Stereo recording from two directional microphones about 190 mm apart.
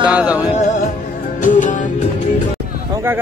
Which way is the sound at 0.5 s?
40° left (ahead or behind).